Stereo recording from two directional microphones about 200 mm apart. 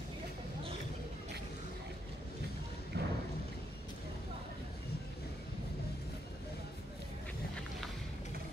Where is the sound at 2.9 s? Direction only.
55° right (ahead or behind).